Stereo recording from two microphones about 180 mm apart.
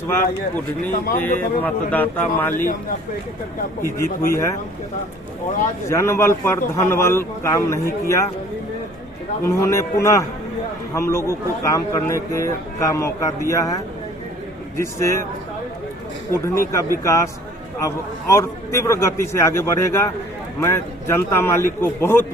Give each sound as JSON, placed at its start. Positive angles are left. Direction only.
{"t": 0.1, "sound": "speech", "side_deg": 15}
{"t": 0.8, "sound": "a man's voice", "side_deg": 45}
{"t": 1.2, "sound": "speech", "side_deg": 10}
{"t": 3.8, "sound": "speech", "side_deg": 15}
{"t": 5.9, "sound": "speech", "side_deg": 15}
{"t": 9.4, "sound": "speech", "side_deg": 15}
{"t": 16.3, "sound": "speech", "side_deg": 15}
{"t": 18.3, "sound": "speech", "side_deg": 15}